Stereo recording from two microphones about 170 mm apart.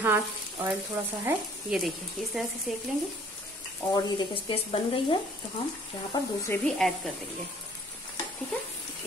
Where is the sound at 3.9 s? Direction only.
25° left (ahead or behind).